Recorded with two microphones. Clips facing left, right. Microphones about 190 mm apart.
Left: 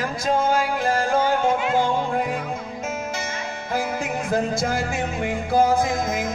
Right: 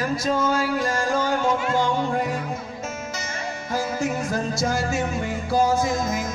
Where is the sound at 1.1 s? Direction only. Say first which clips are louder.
Left 2 dB; 55° left (ahead or behind).